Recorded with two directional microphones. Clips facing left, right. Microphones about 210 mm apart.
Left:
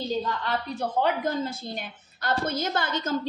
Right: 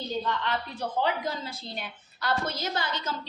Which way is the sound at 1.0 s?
50° left (ahead or behind).